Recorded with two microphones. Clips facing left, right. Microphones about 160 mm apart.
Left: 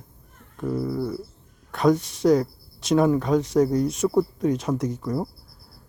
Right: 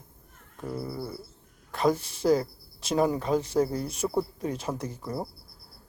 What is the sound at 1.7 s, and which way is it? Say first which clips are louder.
Speech: left 5 dB; centre (ahead or behind).